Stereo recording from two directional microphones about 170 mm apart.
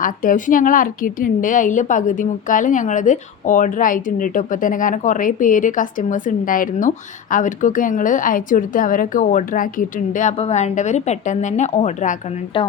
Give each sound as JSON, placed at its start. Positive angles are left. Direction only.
{"t": 0.0, "sound": "a woman's voice", "side_deg": 50}